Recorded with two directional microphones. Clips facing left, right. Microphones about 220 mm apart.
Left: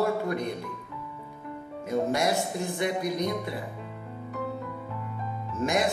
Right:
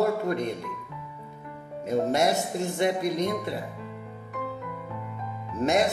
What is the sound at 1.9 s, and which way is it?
Speech, 25° right (ahead or behind).